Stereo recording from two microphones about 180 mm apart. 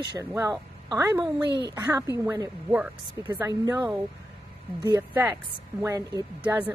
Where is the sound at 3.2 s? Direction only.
20° right (ahead or behind).